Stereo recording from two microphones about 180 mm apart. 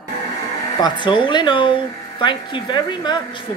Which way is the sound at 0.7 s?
25° left (ahead or behind).